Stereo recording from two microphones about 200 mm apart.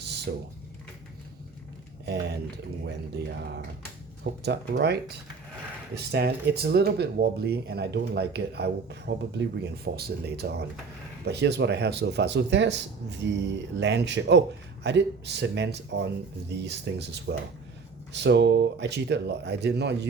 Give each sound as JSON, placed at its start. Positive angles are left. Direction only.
{"t": 0.3, "sound": "speech", "side_deg": -60}
{"t": 3.2, "sound": "speech", "side_deg": -60}